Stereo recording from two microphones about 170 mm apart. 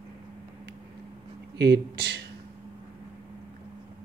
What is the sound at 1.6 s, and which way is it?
Speech, 80° right.